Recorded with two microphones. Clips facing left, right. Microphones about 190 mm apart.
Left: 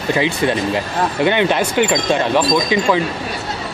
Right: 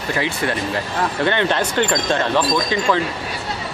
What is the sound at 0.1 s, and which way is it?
Speech, 20° left (ahead or behind).